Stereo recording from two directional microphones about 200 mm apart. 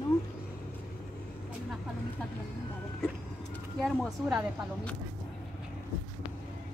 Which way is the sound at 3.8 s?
5° right (ahead or behind).